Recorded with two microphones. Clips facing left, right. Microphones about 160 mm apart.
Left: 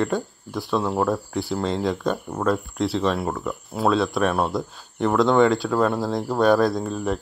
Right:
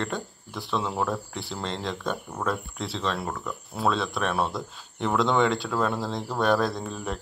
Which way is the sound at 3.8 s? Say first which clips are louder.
Left 6 dB; centre (ahead or behind).